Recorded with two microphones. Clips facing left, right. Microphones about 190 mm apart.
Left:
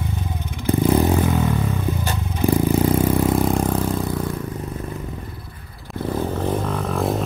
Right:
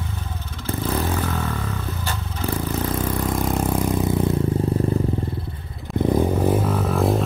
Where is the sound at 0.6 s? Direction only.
15° left (ahead or behind); by 4.1 s 15° right (ahead or behind).